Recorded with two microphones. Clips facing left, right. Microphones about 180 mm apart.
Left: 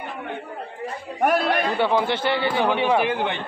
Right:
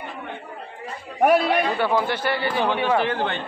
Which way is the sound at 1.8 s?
20° left (ahead or behind).